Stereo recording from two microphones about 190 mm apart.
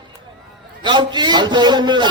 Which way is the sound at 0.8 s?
25° right (ahead or behind).